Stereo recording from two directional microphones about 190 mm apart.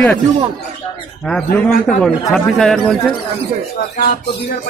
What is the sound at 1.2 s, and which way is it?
Speech, 5° left (ahead or behind).